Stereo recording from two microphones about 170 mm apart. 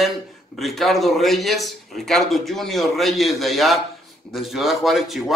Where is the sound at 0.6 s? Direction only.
Centre (ahead or behind).